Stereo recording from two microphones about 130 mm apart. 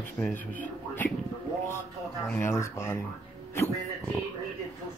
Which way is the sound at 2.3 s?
20° left (ahead or behind).